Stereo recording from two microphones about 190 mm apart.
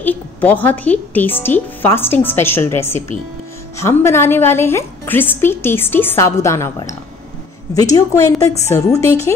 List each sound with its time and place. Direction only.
0.0 s a woman's voice: 10° left (ahead or behind)